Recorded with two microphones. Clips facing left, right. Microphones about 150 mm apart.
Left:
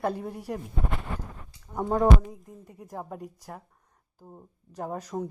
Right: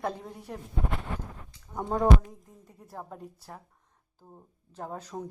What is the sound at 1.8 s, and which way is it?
Speech, 5° left (ahead or behind).